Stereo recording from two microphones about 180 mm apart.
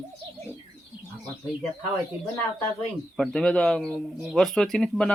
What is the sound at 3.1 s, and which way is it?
Speech, 5° left (ahead or behind).